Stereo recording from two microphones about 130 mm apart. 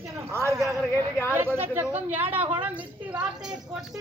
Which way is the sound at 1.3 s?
15° right (ahead or behind).